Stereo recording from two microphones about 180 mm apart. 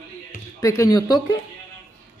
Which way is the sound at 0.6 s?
15° left (ahead or behind).